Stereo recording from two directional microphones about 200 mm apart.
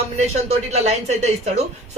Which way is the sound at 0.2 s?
35° right (ahead or behind).